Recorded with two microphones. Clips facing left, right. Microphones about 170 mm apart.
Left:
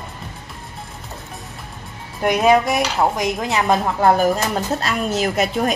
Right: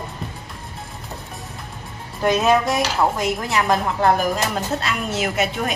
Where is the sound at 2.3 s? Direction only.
15° left (ahead or behind).